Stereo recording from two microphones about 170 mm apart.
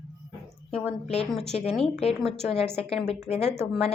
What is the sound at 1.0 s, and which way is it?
Speech, 35° left (ahead or behind).